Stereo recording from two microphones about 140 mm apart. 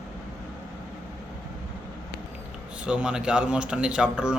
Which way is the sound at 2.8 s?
5° right (ahead or behind).